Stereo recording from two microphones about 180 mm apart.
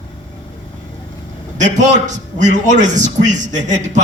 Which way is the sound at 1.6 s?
40° right (ahead or behind).